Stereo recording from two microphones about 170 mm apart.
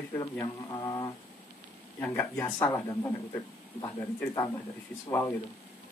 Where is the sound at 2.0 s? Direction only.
10° left (ahead or behind).